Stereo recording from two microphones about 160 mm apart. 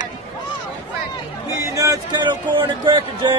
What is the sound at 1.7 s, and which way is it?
Speech, 20° right (ahead or behind).